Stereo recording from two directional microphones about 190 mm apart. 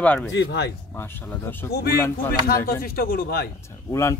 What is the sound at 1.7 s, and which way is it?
A man's voice, 55° left (ahead or behind).